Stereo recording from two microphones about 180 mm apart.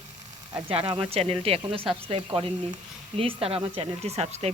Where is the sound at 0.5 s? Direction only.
30° right (ahead or behind).